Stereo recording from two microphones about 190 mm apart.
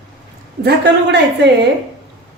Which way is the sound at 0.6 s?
65° right (ahead or behind).